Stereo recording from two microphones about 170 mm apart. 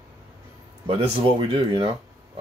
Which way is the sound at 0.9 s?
35° right (ahead or behind).